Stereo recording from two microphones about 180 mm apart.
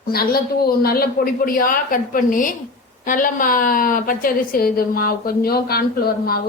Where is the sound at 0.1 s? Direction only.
60° left (ahead or behind).